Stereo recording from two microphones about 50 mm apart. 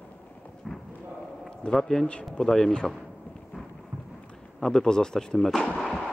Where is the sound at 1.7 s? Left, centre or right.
Centre.